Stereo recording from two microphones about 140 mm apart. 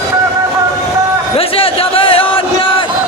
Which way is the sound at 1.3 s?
40° left (ahead or behind).